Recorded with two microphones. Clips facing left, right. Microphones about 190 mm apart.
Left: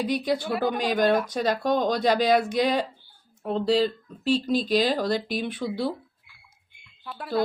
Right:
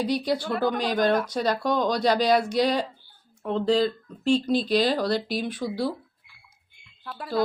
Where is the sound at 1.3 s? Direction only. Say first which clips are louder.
Left 1 dB; 50° left (ahead or behind).